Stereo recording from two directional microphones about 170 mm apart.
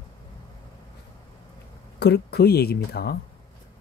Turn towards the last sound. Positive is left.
turn(degrees=70)  # may be behind; listen again after turning